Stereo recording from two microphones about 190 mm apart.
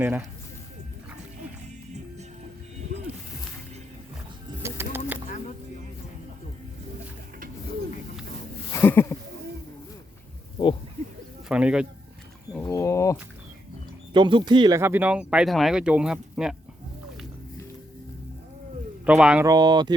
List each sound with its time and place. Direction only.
0.0 s speech: 10° right (ahead or behind)
4.6 s music: 10° right (ahead or behind)
8.7 s a sound: 10° left (ahead or behind)
11.4 s speech: 5° right (ahead or behind)
12.5 s a sound: 15° left (ahead or behind)
14.1 s speech: 25° right (ahead or behind); by 16.6 s 5° right (ahead or behind)
19.0 s speech: 5° right (ahead or behind)
19.5 s speech: 20° right (ahead or behind)